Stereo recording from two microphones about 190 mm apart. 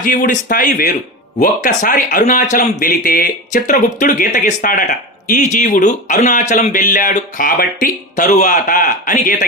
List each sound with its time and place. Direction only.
0.0 s speech: 45° left (ahead or behind)